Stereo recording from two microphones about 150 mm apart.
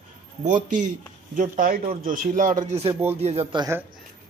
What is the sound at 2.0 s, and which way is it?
Speech, 60° right (ahead or behind).